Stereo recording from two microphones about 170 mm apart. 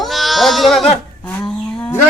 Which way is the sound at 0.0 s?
Centre (ahead or behind).